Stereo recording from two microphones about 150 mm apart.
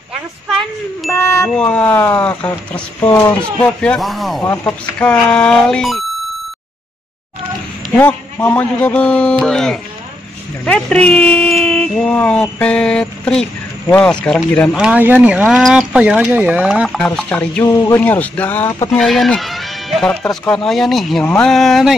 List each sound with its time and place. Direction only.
0.5 s a sound: centre (ahead or behind)
1.1 s a sound: 15° left (ahead or behind)
1.5 s speech: 5° left (ahead or behind)
4.4 s speech: 15° left (ahead or behind)
7.9 s speech: 10° left (ahead or behind)
14.8 s speech: 10° right (ahead or behind)
17.0 s speech: 5° left (ahead or behind)
17.7 s a man's voice: 20° left (ahead or behind)
18.0 s speech: 10° left (ahead or behind)
18.9 s speech: centre (ahead or behind)